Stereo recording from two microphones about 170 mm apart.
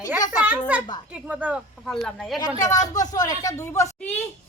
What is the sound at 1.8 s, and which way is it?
Speech, centre (ahead or behind).